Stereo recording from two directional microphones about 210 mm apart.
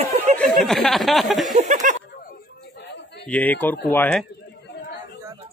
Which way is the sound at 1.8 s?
40° right (ahead or behind).